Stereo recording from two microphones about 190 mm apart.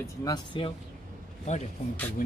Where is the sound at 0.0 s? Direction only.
20° left (ahead or behind).